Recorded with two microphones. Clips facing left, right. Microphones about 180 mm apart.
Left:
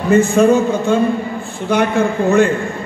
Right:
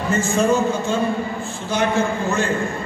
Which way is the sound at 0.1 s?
60° left (ahead or behind).